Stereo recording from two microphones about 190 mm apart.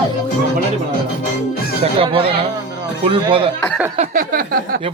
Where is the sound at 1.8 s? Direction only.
30° right (ahead or behind).